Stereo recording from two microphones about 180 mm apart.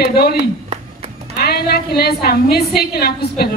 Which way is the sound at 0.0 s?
60° left (ahead or behind).